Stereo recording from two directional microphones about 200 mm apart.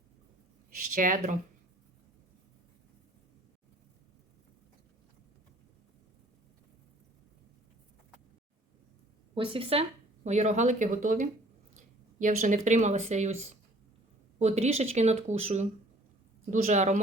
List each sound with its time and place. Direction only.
0.9 s speech: 40° right (ahead or behind)
9.3 s speech: 25° right (ahead or behind)
14.3 s speech: 35° right (ahead or behind)